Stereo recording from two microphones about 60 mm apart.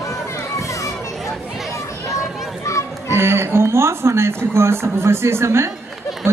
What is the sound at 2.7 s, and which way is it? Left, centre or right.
Music, left.